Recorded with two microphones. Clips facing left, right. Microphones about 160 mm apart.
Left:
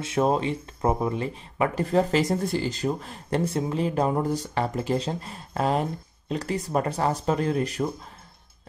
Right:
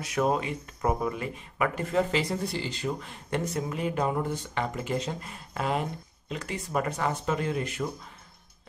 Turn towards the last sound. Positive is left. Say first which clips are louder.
# left 5 dB
turn(degrees=35)  # may be behind; listen again after turning